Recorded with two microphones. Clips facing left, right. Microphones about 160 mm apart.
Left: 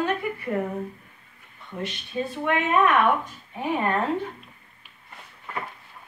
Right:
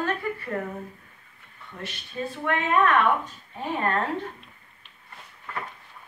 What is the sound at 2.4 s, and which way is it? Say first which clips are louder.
A woman's voice: left 1 dB; 15° left (ahead or behind).